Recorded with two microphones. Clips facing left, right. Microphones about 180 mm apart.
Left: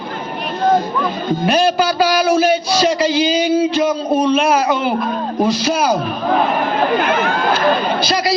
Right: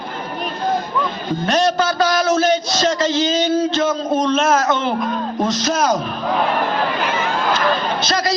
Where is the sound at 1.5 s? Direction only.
10° left (ahead or behind).